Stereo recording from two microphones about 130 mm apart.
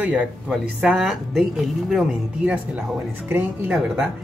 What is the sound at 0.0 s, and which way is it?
Speech, 10° right (ahead or behind).